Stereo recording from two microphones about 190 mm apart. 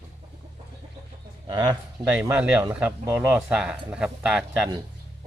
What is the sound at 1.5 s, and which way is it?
Speech, 25° right (ahead or behind).